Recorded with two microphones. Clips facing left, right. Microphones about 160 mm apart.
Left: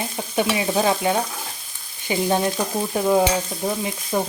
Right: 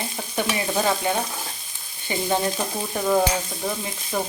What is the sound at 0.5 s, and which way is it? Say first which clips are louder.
Frying: left 2 dB; 10° left (ahead or behind).